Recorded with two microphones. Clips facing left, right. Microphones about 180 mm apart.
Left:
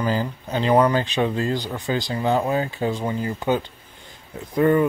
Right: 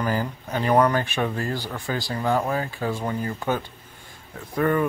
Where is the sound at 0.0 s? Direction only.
20° left (ahead or behind).